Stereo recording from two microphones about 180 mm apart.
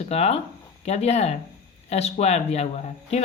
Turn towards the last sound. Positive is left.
turn(degrees=35)  # may be behind; listen again after turning